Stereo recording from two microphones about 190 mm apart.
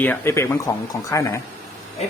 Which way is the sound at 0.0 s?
10° left (ahead or behind).